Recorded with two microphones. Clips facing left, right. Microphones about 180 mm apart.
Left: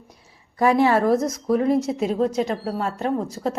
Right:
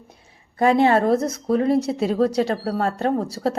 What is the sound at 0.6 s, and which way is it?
A woman's voice, 25° right (ahead or behind).